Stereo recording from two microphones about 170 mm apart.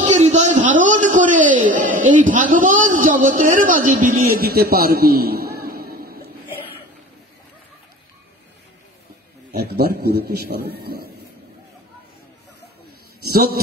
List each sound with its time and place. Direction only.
0.0 s a sound: 40° right (ahead or behind)
2.2 s a man's voice: 50° right (ahead or behind)
9.5 s a man's voice: 70° right (ahead or behind)
13.3 s speech: 60° right (ahead or behind)